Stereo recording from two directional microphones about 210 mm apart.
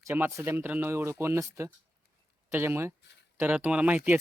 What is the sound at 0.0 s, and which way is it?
Speech, 10° right (ahead or behind).